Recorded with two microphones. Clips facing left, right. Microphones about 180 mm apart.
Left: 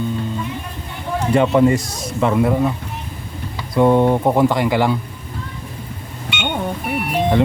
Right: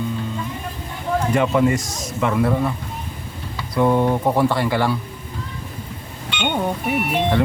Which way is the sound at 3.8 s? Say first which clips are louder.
Left 4 dB; 20° left (ahead or behind).